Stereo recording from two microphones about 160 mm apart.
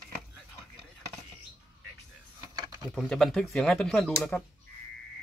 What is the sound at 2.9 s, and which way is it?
Speech, centre (ahead or behind).